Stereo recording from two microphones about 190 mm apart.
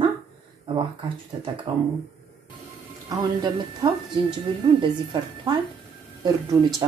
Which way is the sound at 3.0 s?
20° right (ahead or behind).